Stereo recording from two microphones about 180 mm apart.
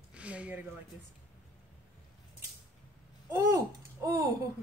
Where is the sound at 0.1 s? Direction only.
5° right (ahead or behind).